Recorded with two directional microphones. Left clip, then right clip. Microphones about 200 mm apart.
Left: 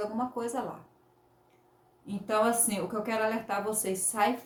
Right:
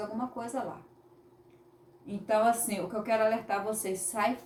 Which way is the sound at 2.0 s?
15° left (ahead or behind).